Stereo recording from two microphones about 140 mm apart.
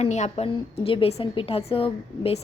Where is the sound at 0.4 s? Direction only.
40° left (ahead or behind).